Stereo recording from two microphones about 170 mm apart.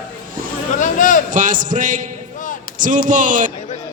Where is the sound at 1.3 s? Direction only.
50° right (ahead or behind).